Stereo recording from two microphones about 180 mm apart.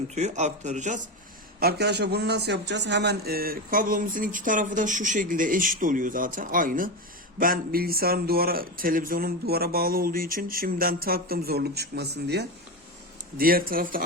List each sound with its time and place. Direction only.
0.1 s a man's voice: 40° right (ahead or behind)
1.5 s a man's voice: 60° right (ahead or behind)
13.4 s a man's voice: 55° right (ahead or behind)